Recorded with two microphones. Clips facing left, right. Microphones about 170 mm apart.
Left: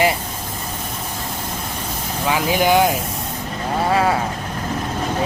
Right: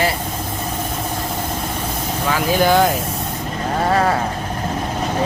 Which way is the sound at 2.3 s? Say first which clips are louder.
Right 1 dB; 15° left (ahead or behind).